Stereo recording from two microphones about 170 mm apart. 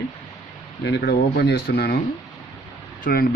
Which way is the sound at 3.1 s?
60° left (ahead or behind).